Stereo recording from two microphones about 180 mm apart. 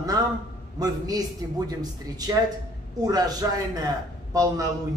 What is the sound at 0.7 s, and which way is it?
Speech, 20° right (ahead or behind).